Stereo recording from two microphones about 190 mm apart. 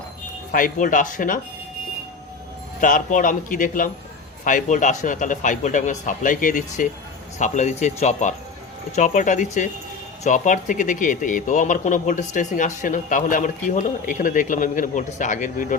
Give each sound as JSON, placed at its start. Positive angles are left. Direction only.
{"t": 0.5, "sound": "a man's voice", "side_deg": 45}
{"t": 2.8, "sound": "a man's voice", "side_deg": 45}